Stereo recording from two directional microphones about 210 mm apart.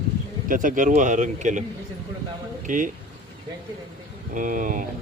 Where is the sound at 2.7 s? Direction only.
40° right (ahead or behind).